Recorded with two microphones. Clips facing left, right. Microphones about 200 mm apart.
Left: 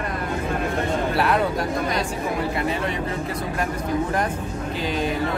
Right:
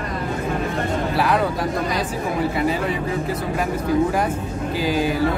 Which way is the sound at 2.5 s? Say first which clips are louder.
Right 3 dB; centre (ahead or behind).